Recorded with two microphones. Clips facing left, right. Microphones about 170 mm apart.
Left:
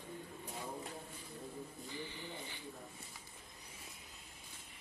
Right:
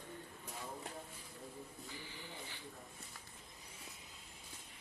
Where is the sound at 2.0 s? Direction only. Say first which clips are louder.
Left 5 dB; 5° right (ahead or behind).